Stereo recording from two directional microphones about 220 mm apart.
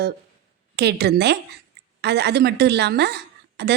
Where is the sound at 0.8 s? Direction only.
50° right (ahead or behind).